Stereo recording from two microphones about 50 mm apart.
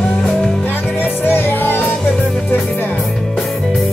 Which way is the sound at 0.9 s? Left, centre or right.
Left.